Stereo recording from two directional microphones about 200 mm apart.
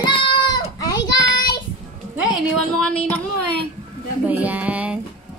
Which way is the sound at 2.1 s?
Centre (ahead or behind).